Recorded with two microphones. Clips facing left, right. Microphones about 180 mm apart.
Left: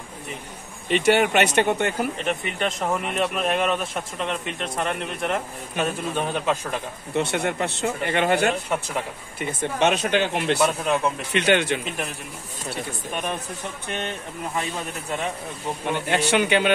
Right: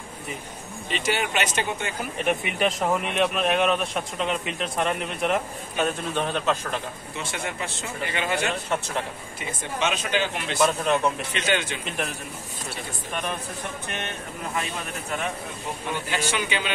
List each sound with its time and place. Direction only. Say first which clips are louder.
0.8 s speech: left 8 dB; 60° left (ahead or behind)
2.2 s speech: right 2 dB; 10° right (ahead or behind)
6.1 s speech: left 1 dB; 10° left (ahead or behind)
7.2 s speech: left 9 dB; 60° left (ahead or behind)
8.6 s speech: left 1 dB; 10° left (ahead or behind)
9.4 s speech: left 6 dB; 60° left (ahead or behind)
10.6 s speech: right 3 dB; 5° left (ahead or behind)
11.3 s speech: left 6 dB; 60° left (ahead or behind)
16.1 s speech: left 8 dB; 65° left (ahead or behind)